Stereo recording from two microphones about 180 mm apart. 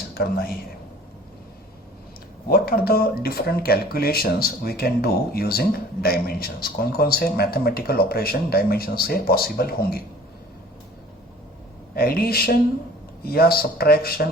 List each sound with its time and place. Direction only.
0.1 s speech: 55° left (ahead or behind)
2.5 s speech: 55° left (ahead or behind)
11.9 s speech: 55° left (ahead or behind)